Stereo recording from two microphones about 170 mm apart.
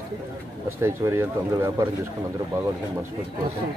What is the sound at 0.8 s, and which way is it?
Speech, 15° right (ahead or behind).